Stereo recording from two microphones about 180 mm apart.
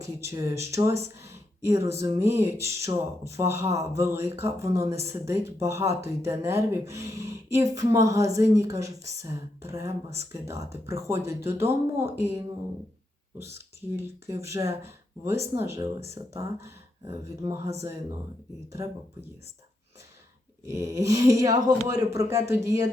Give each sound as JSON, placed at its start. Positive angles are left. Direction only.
{"t": 0.0, "sound": "speech", "side_deg": -15}
{"t": 13.9, "sound": "speech", "side_deg": -15}
{"t": 20.7, "sound": "speech", "side_deg": -15}